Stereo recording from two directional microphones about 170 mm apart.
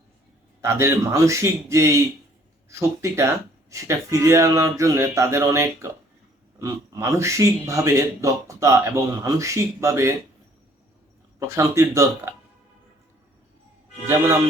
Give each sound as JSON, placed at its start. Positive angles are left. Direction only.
{"t": 0.6, "sound": "speech", "side_deg": -15}
{"t": 11.3, "sound": "speech", "side_deg": -15}